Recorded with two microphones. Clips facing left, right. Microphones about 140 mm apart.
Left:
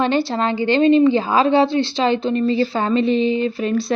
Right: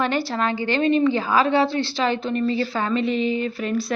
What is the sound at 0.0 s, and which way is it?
A woman's voice, 25° left (ahead or behind).